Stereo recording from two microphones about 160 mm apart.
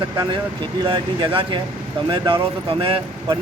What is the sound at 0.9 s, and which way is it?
Speech, 30° right (ahead or behind).